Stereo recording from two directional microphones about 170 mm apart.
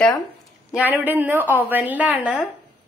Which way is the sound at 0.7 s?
10° right (ahead or behind).